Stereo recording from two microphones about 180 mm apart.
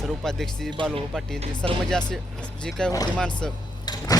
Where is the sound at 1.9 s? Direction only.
5° left (ahead or behind).